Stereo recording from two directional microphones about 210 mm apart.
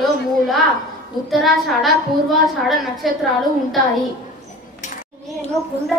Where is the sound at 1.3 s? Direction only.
Centre (ahead or behind).